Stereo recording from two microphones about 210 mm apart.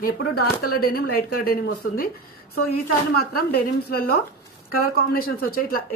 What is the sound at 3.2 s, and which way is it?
Speech, 45° left (ahead or behind).